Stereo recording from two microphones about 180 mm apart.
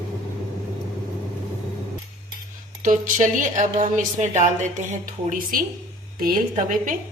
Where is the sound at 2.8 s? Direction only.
45° right (ahead or behind).